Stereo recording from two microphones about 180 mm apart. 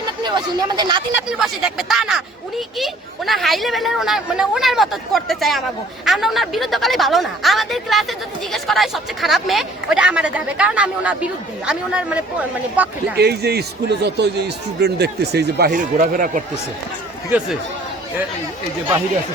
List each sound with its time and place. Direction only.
0.2 s speech: 25° right (ahead or behind)
1.3 s speech: 5° right (ahead or behind)
13.1 s speech: 60° right (ahead or behind)